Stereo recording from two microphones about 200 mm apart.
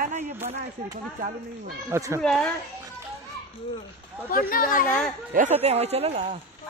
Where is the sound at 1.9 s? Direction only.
15° right (ahead or behind).